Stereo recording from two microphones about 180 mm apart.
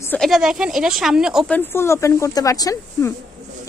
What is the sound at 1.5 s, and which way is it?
A woman's voice, 15° left (ahead or behind).